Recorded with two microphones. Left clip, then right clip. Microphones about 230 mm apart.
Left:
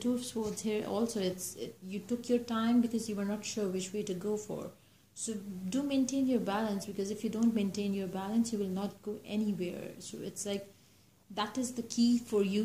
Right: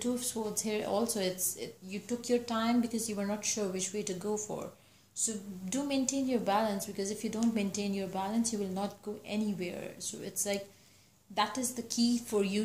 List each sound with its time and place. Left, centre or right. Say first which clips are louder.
0.0 s a woman's voice: even; centre